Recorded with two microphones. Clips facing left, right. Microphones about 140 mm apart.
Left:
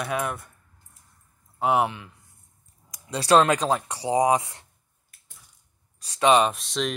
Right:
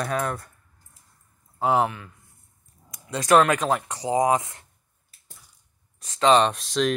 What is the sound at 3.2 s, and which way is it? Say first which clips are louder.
Speech: even; 25° left (ahead or behind).